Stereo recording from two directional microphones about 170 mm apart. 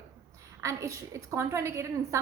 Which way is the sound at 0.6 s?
15° right (ahead or behind).